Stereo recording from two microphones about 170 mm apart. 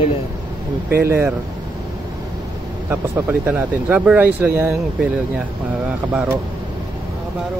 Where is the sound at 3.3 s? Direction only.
10° right (ahead or behind).